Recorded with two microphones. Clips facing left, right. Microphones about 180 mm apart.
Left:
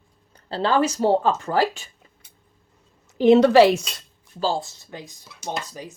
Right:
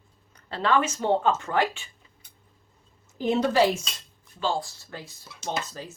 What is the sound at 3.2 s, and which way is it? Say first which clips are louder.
Speech: left 9 dB; 75° left (ahead or behind).